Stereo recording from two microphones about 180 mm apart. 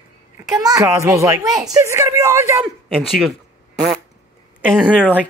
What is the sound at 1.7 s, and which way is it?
Speech, 15° right (ahead or behind).